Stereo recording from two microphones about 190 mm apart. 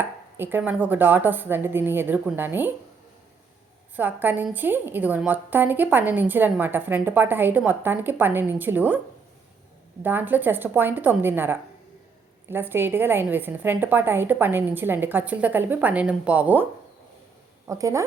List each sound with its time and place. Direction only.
0.0 s a woman's voice: 10° right (ahead or behind)
3.9 s a woman's voice: 10° right (ahead or behind)
10.0 s a woman's voice: 10° right (ahead or behind)
17.7 s a woman's voice: 15° right (ahead or behind)